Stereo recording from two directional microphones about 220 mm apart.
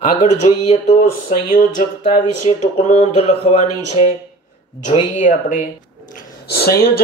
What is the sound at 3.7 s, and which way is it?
Speech, 90° left.